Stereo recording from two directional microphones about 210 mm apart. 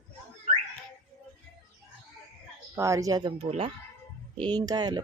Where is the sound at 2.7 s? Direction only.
15° right (ahead or behind).